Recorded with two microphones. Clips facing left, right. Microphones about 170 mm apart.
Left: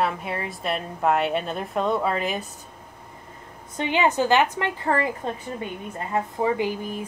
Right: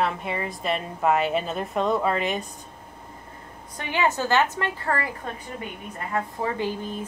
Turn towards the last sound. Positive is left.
turn(degrees=10)  # may be behind; listen again after turning